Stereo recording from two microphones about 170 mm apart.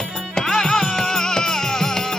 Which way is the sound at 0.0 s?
5° left (ahead or behind).